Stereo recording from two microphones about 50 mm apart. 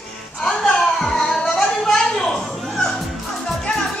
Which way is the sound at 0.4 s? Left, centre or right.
Centre.